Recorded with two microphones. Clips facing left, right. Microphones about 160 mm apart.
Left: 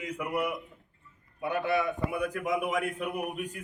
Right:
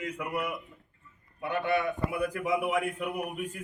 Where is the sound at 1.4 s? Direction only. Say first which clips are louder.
Even; centre (ahead or behind).